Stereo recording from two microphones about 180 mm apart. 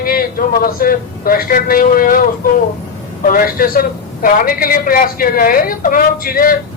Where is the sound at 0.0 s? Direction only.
50° left (ahead or behind).